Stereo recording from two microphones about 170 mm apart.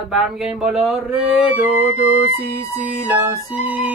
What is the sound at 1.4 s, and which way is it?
Music, 10° right (ahead or behind).